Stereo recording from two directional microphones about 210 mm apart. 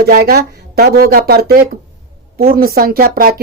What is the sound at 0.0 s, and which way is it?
Speech, 45° right (ahead or behind).